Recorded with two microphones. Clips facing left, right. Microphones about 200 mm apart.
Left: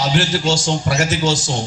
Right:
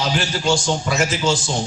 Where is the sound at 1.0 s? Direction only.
75° left (ahead or behind).